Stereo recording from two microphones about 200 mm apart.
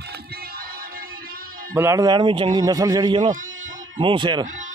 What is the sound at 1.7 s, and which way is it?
Speech, 15° right (ahead or behind).